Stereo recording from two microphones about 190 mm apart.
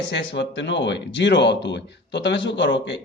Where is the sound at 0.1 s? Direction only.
70° left (ahead or behind).